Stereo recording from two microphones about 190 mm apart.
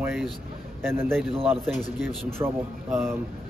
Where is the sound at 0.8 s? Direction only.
10° right (ahead or behind).